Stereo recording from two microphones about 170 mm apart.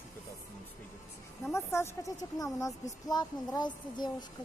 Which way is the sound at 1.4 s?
15° left (ahead or behind).